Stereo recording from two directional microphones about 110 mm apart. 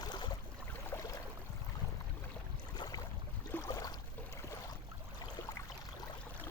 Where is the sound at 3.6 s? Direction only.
30° left (ahead or behind).